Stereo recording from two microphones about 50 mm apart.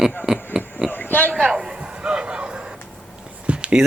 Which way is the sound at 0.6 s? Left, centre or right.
Centre.